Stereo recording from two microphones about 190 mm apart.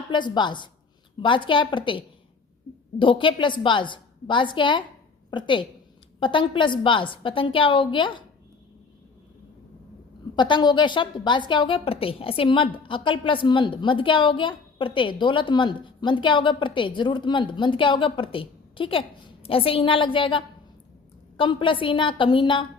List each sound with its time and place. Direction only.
0.1 s a woman's voice: 25° left (ahead or behind)
10.3 s a woman's voice: 25° left (ahead or behind)